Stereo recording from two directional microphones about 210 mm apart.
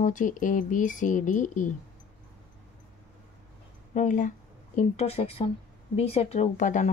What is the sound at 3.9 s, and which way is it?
Speech, 35° left (ahead or behind).